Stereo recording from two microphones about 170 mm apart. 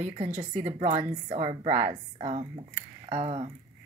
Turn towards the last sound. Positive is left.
turn(degrees=-35)  # may be behind; listen again after turning